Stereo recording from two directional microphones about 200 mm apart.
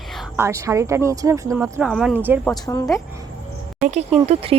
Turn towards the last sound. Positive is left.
turn(degrees=-30)  # may be behind; listen again after turning